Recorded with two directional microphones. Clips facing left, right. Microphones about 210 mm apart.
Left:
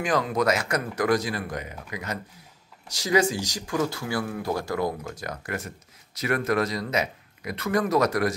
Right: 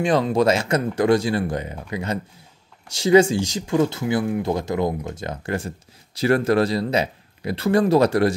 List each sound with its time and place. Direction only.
0.0 s a man's voice: 25° right (ahead or behind)